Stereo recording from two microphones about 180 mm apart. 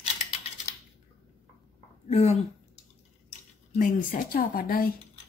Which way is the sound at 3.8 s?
50° left (ahead or behind).